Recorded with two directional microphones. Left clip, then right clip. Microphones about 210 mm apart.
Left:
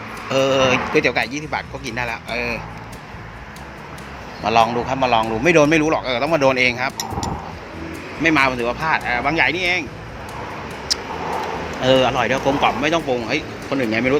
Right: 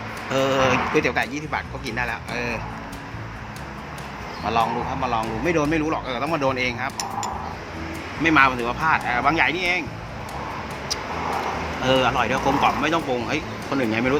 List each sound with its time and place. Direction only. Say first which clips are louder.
0.3 s speech: left 4 dB; 10° left (ahead or behind)
4.4 s speech: left 6 dB; 30° left (ahead or behind)
8.2 s speech: left 1 dB; 15° left (ahead or behind)
10.9 s vehicle: left 6 dB; 20° left (ahead or behind)
11.8 s speech: left 4 dB; 15° left (ahead or behind)